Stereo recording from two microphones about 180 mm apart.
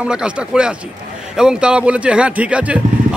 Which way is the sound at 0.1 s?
5° right (ahead or behind).